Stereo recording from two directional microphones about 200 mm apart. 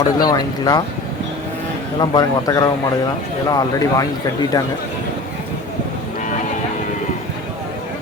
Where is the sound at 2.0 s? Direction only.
20° left (ahead or behind).